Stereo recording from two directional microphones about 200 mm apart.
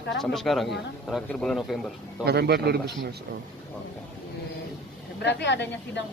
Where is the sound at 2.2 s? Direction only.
55° right (ahead or behind).